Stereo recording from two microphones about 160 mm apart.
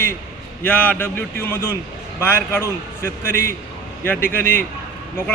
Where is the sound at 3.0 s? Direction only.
15° left (ahead or behind).